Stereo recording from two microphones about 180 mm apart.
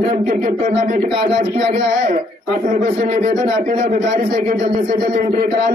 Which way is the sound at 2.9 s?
40° right (ahead or behind).